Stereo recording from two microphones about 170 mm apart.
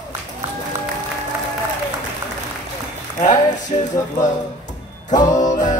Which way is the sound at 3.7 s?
30° left (ahead or behind).